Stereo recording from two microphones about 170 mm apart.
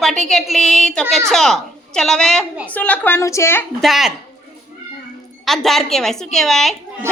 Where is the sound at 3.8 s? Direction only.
Centre (ahead or behind).